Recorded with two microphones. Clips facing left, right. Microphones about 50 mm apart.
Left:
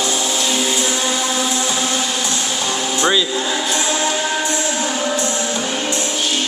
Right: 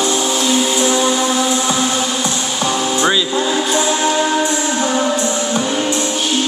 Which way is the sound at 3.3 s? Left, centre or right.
Centre.